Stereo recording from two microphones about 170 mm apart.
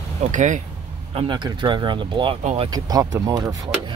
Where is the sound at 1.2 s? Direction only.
25° right (ahead or behind).